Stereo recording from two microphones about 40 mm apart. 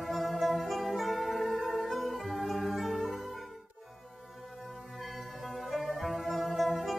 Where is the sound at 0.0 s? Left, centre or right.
Centre.